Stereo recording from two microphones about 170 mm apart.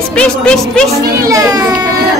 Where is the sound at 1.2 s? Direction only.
20° right (ahead or behind).